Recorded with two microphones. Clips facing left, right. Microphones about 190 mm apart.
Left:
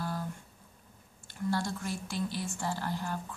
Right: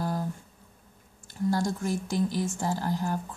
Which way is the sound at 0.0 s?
45° right (ahead or behind).